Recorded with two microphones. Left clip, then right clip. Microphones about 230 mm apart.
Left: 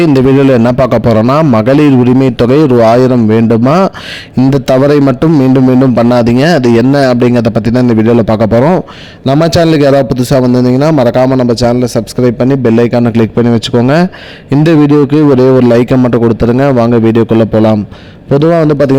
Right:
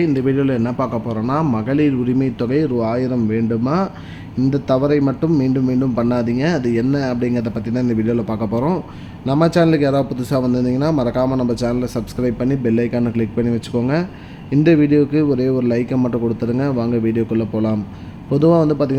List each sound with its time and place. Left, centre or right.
0.0 s a man's voice: left